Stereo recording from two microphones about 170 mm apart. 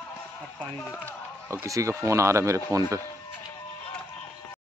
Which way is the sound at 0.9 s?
10° left (ahead or behind).